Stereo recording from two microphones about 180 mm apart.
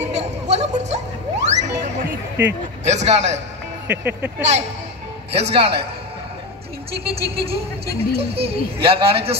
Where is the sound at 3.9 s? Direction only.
10° right (ahead or behind).